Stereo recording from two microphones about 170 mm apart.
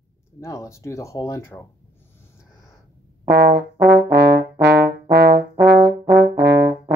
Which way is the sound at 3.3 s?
90° right.